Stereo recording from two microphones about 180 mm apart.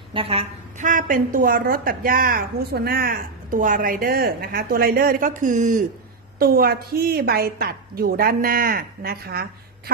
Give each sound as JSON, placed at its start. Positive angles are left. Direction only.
{"t": 0.1, "sound": "a woman's voice", "side_deg": -30}
{"t": 6.4, "sound": "a woman's voice", "side_deg": -55}